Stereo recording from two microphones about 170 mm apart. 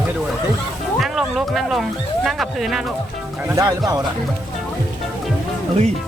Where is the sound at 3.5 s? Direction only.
20° right (ahead or behind).